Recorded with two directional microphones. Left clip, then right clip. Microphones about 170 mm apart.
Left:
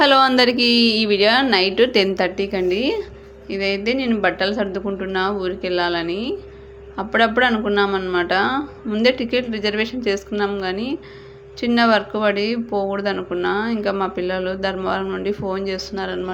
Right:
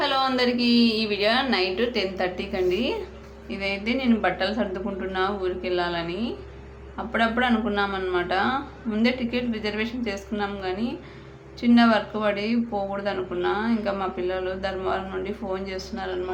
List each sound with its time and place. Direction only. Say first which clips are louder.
0.0 s speech: left 9 dB; 50° left (ahead or behind); by 16.1 s 30° left (ahead or behind)